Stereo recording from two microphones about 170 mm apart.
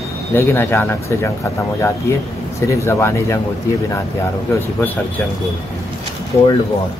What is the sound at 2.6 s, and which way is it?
Speech, 15° left (ahead or behind).